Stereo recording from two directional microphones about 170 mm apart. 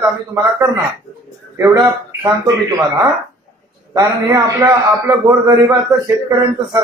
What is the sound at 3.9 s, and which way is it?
A man's voice, 20° right (ahead or behind).